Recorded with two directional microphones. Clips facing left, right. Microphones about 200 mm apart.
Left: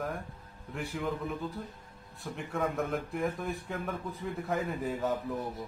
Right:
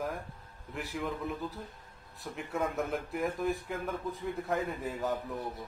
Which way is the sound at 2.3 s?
Centre (ahead or behind).